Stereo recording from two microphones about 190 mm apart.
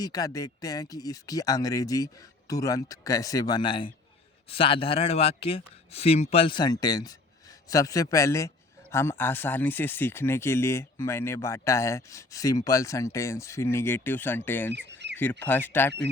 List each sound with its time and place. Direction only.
0.0 s a man's voice: 20° left (ahead or behind)
14.7 s duck: 65° right (ahead or behind)
15.2 s a man's voice: 10° left (ahead or behind)